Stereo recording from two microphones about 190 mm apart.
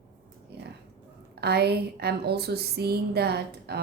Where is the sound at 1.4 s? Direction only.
60° right (ahead or behind).